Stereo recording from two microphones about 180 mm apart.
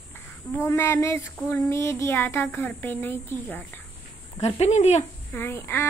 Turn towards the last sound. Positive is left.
turn(degrees=15)  # may be behind; listen again after turning